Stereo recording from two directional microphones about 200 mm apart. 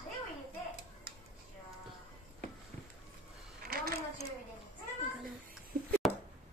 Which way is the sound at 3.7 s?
45° right (ahead or behind).